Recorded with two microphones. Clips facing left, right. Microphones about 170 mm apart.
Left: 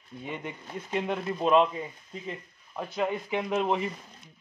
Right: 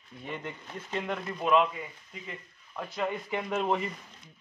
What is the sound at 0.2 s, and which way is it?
Speech, 15° left (ahead or behind).